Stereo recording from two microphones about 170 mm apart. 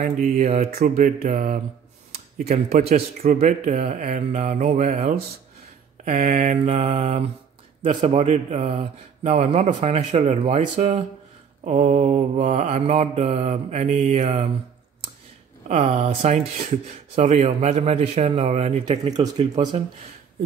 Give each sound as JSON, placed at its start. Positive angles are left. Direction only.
{"t": 0.0, "sound": "mantra", "side_deg": -45}
{"t": 0.7, "sound": "speech", "side_deg": -70}
{"t": 0.9, "sound": "speech", "side_deg": -50}
{"t": 2.3, "sound": "mantra", "side_deg": -45}
{"t": 6.2, "sound": "mantra", "side_deg": -45}
{"t": 15.7, "sound": "mantra", "side_deg": -35}
{"t": 19.0, "sound": "speech", "side_deg": -20}